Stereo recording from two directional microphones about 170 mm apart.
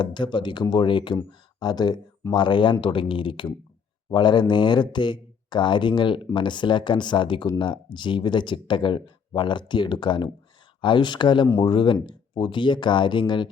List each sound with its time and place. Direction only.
0.0 s speech: 25° left (ahead or behind)